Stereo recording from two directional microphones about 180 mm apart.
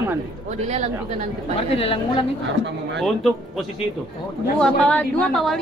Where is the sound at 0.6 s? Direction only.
40° right (ahead or behind).